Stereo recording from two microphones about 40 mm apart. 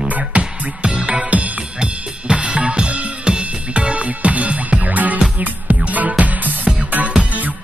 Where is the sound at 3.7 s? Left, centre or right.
Right.